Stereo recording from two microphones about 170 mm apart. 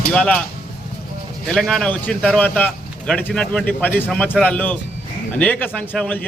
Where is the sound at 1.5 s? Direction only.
Centre (ahead or behind).